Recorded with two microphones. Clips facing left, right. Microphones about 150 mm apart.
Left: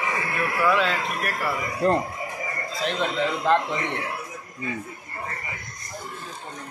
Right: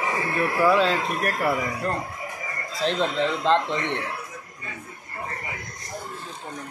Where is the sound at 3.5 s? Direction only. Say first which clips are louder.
Even; 15° left (ahead or behind).